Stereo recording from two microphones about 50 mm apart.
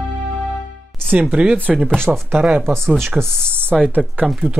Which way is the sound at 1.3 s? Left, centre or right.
Right.